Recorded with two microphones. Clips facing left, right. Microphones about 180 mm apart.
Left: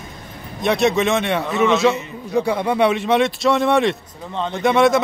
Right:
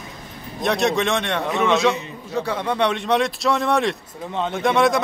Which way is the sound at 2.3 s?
10° left (ahead or behind).